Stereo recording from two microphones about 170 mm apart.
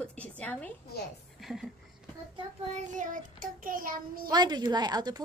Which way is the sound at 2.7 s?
50° right (ahead or behind).